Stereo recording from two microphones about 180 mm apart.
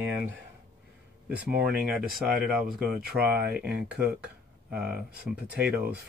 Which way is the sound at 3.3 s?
60° right (ahead or behind).